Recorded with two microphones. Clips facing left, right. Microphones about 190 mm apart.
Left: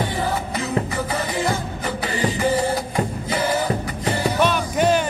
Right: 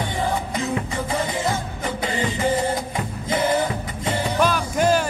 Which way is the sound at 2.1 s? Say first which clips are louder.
Left 2 dB; 25° right (ahead or behind).